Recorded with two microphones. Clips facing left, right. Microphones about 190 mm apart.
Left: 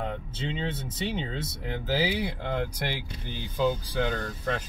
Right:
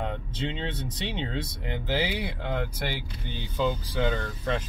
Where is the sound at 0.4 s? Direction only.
5° left (ahead or behind).